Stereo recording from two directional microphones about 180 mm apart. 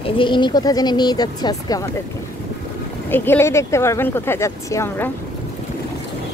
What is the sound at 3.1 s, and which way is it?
Speech, 10° left (ahead or behind).